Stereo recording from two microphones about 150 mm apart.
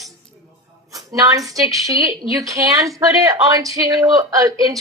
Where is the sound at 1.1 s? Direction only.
25° right (ahead or behind).